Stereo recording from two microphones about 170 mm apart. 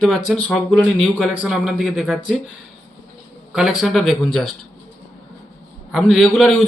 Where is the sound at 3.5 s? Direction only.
5° right (ahead or behind).